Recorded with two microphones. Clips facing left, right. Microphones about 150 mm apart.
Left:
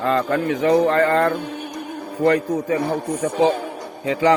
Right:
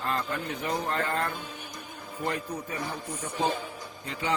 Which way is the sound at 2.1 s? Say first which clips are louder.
Left 14 dB; 85° left.